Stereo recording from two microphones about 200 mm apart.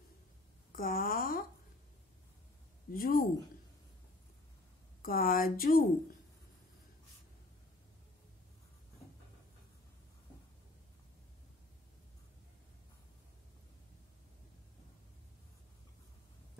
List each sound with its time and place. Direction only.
0.7 s a sound: 45° left (ahead or behind)
2.9 s a woman's voice: 45° left (ahead or behind)
5.0 s a woman's voice: 45° left (ahead or behind)